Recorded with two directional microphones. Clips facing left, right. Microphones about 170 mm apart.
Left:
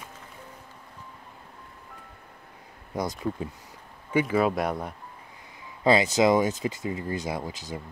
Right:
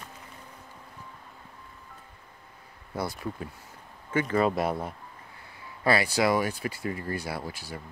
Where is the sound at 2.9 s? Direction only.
20° left (ahead or behind).